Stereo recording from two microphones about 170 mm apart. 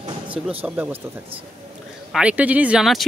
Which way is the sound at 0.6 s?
10° right (ahead or behind).